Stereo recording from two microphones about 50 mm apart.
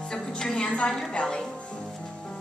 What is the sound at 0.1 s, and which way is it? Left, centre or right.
Music, centre.